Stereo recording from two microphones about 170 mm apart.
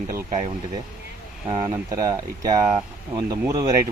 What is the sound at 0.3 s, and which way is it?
Speech, 45° right (ahead or behind).